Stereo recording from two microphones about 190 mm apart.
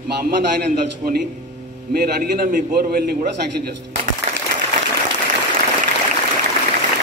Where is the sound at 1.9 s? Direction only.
50° right (ahead or behind).